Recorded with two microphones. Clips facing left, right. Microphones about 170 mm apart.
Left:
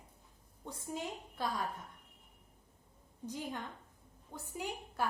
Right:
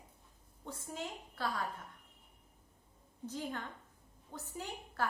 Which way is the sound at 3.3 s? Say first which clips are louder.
Even; 15° left (ahead or behind).